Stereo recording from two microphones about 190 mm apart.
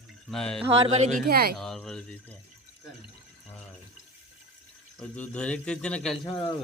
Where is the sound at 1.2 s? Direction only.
55° right (ahead or behind).